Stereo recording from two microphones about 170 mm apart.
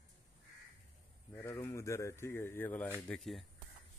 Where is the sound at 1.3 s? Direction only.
15° left (ahead or behind).